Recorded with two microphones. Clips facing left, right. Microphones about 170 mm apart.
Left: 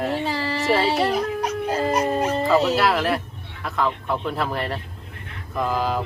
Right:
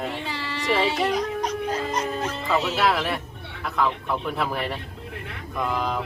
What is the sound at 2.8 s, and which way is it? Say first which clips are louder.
A man's voice: left 3 dB; centre (ahead or behind).